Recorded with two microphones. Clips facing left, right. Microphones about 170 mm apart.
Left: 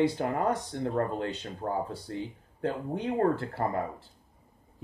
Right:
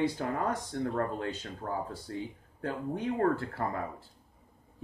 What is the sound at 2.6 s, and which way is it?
Speech, 30° left (ahead or behind).